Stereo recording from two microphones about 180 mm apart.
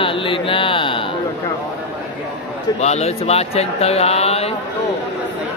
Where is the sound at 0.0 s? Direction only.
30° left (ahead or behind).